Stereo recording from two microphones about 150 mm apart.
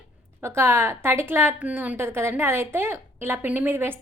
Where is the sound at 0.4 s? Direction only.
15° right (ahead or behind).